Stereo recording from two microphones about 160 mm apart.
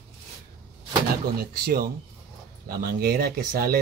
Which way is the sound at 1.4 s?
65° right (ahead or behind).